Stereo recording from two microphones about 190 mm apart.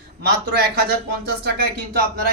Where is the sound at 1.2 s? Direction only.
55° right (ahead or behind).